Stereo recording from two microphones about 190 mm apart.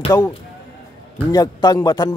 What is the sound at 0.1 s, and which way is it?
A man's voice, 20° left (ahead or behind).